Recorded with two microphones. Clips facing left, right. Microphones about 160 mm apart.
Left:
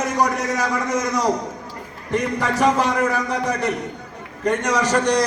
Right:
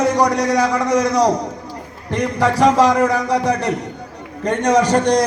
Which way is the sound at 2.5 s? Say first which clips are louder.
Right 5 dB; 35° right (ahead or behind).